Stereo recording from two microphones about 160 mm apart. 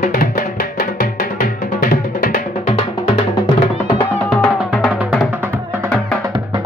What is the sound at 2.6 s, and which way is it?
Music, 35° left (ahead or behind).